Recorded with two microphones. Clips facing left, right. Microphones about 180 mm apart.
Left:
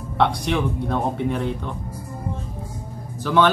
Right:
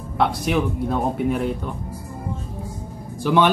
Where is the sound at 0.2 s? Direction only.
5° right (ahead or behind).